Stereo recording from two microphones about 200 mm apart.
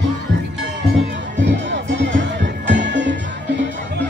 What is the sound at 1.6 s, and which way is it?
Music, 60° right (ahead or behind).